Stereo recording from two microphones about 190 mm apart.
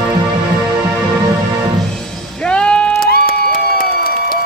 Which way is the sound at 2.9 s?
50° left (ahead or behind).